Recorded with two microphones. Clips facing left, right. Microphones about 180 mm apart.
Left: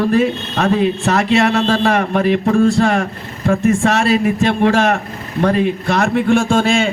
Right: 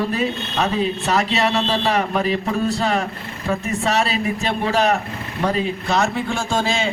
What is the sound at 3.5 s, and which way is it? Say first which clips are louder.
Speech: left 7 dB; 45° left (ahead or behind).